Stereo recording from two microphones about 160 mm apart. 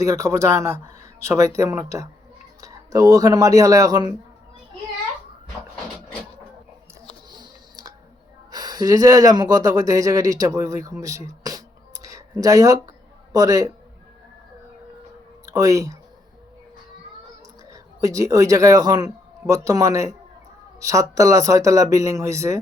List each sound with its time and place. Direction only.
0.0 s speech: 20° right (ahead or behind)
7.3 s a sound: 25° right (ahead or behind)
8.5 s speech: 25° right (ahead or behind)
11.0 s music: 20° right (ahead or behind)
13.3 s speech: 20° right (ahead or behind)
15.4 s speech: 20° right (ahead or behind)
17.7 s a man's voice: 20° right (ahead or behind)